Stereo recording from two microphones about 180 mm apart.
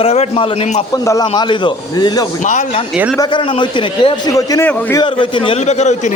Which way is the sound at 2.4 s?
40° left (ahead or behind).